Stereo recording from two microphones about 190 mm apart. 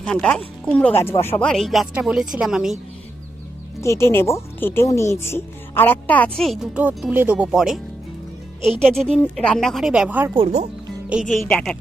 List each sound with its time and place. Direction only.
0.0 s speech: 5° left (ahead or behind)
3.8 s speech: 15° left (ahead or behind); by 7.8 s 5° right (ahead or behind)
8.8 s speech: 5° left (ahead or behind)
10.3 s speech: 30° right (ahead or behind)
11.1 s speech: centre (ahead or behind)